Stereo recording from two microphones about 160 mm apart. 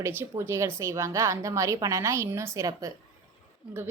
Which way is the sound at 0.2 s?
15° right (ahead or behind).